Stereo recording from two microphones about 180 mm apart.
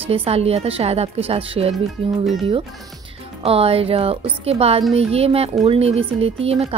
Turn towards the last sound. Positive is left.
turn(degrees=-35)  # may be behind; listen again after turning